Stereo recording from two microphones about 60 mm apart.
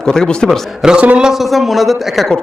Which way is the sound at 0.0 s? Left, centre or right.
Centre.